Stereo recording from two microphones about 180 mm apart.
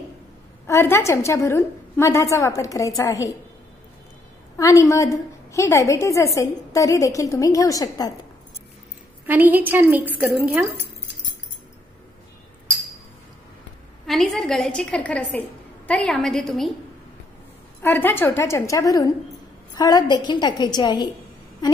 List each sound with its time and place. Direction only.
0.7 s a woman's voice: 15° left (ahead or behind)
4.6 s a woman's voice: 15° left (ahead or behind)
9.2 s a woman's voice: 10° right (ahead or behind)
14.0 s a woman's voice: centre (ahead or behind)
17.8 s a woman's voice: 10° left (ahead or behind)